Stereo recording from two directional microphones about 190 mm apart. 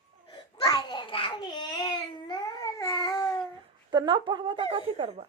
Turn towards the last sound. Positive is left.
turn(degrees=-30)  # may be behind; listen again after turning